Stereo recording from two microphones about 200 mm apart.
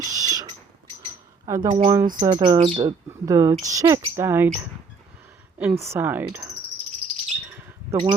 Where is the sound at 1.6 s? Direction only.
35° right (ahead or behind); by 4.5 s 10° right (ahead or behind).